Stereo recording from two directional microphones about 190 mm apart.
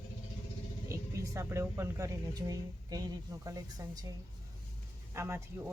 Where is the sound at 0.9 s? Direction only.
15° right (ahead or behind).